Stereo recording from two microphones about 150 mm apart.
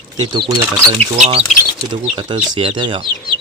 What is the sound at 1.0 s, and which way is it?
Speech, 45° right (ahead or behind).